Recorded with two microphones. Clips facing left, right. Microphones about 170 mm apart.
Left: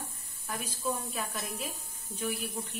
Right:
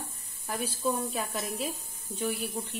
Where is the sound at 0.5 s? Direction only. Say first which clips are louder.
Right 4 dB; 35° right (ahead or behind).